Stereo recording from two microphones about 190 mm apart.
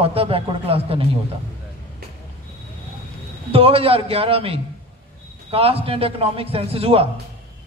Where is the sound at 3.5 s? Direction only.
30° right (ahead or behind).